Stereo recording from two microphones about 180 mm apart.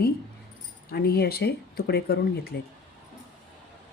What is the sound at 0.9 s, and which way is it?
Speech, 60° left (ahead or behind).